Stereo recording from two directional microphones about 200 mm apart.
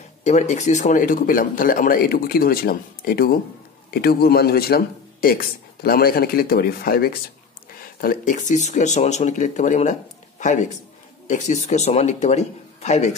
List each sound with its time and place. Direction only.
0.2 s a man's voice: 35° left (ahead or behind)